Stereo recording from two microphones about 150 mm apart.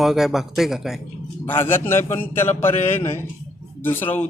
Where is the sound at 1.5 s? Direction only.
15° left (ahead or behind).